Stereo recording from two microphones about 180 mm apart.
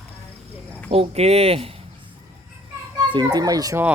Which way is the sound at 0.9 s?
35° right (ahead or behind).